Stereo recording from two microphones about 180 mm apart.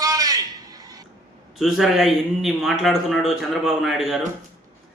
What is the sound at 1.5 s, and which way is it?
A man's voice, centre (ahead or behind).